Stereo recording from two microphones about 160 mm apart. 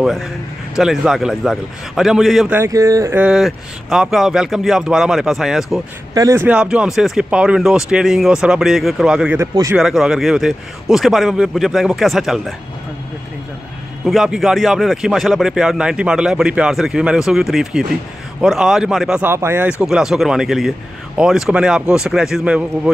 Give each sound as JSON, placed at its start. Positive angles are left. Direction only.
{"t": 0.0, "sound": "speech", "side_deg": 0}
{"t": 2.5, "sound": "speech", "side_deg": -15}
{"t": 3.3, "sound": "speech", "side_deg": 0}
{"t": 6.1, "sound": "speech", "side_deg": -20}
{"t": 9.4, "sound": "speech", "side_deg": -15}
{"t": 9.8, "sound": "speech", "side_deg": -5}
{"t": 14.0, "sound": "speech", "side_deg": 0}
{"t": 19.8, "sound": "speech", "side_deg": -5}